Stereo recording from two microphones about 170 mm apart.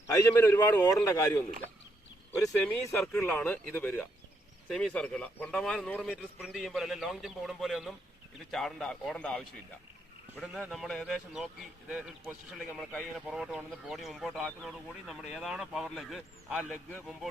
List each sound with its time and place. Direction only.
0.1 s speech: 15° left (ahead or behind)
2.4 s speech: 10° left (ahead or behind)
10.4 s speech: centre (ahead or behind)